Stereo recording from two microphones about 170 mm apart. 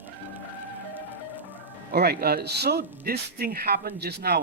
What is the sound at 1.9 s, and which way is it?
Speech, 65° right (ahead or behind).